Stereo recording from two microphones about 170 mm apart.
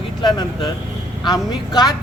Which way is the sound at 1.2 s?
25° left (ahead or behind).